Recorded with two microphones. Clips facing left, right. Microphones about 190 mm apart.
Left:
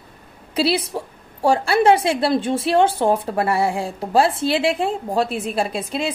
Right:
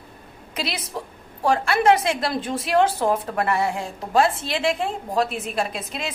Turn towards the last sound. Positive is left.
turn(degrees=30)  # may be behind; listen again after turning